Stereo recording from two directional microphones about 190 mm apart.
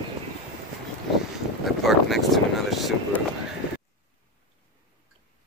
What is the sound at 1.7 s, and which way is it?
Vehicle, centre (ahead or behind).